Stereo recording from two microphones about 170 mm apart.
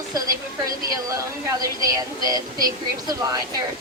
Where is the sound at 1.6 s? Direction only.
20° right (ahead or behind).